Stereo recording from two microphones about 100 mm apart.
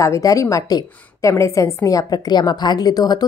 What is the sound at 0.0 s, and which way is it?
A woman's voice, 35° left (ahead or behind).